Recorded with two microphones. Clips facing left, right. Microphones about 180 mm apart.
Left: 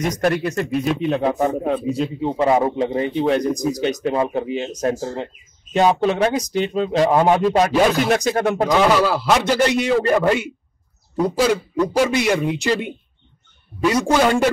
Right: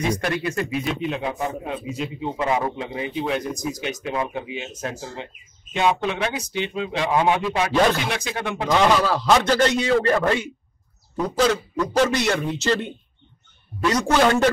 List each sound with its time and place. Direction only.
0.2 s speech: 45° left (ahead or behind)
7.7 s speech: centre (ahead or behind)
8.1 s speech: 45° left (ahead or behind)
8.7 s a man's voice: 5° left (ahead or behind)